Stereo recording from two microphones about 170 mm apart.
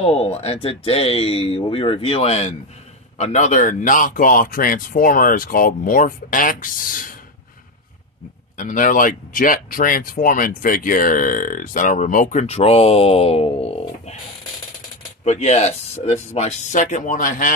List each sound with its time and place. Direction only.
0.0 s speech: 40° left (ahead or behind); by 7.2 s 55° left (ahead or behind)
8.5 s speech: 50° left (ahead or behind)
15.2 s speech: 40° left (ahead or behind)